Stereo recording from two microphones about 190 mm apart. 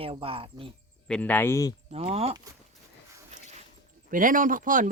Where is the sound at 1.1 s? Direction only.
10° left (ahead or behind).